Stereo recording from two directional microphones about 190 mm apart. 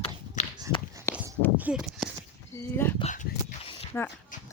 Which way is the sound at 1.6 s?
5° right (ahead or behind).